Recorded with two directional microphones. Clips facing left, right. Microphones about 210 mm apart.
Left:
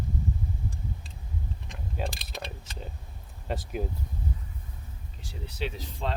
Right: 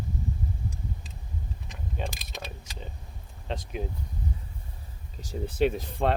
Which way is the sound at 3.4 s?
5° left (ahead or behind).